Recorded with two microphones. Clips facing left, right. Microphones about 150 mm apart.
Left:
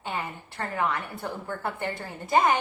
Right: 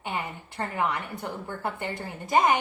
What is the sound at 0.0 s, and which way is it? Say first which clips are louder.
A woman's voice: even; 15° right (ahead or behind).